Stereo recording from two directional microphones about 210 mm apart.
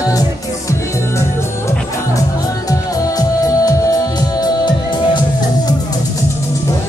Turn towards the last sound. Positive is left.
turn(degrees=20)  # may be behind; listen again after turning